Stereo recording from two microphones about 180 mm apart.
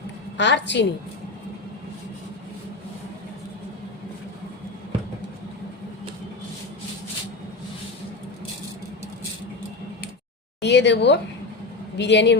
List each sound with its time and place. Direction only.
0.3 s a woman's voice: 75° left (ahead or behind)
10.6 s a woman's voice: 70° left (ahead or behind)